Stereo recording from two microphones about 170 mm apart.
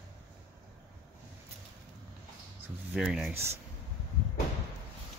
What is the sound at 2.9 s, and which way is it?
Speech, 5° right (ahead or behind).